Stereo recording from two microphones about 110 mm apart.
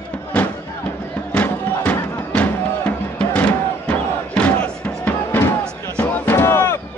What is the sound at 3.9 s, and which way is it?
Crowd, 10° left (ahead or behind).